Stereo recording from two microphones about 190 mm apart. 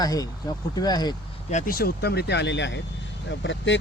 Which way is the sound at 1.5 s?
45° left (ahead or behind).